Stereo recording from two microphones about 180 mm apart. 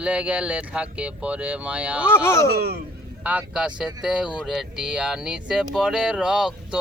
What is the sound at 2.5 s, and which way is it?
Speech, 60° right (ahead or behind).